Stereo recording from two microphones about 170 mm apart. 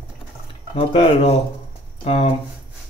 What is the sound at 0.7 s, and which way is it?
Speech, 35° left (ahead or behind).